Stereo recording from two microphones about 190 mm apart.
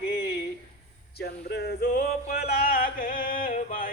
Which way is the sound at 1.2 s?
60° left (ahead or behind).